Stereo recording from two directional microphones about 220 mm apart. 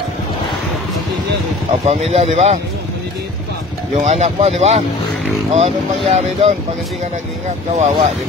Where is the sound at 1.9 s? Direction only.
30° right (ahead or behind).